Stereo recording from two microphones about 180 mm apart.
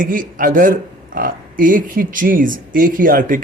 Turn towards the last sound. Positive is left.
turn(degrees=-50)  # may be behind; listen again after turning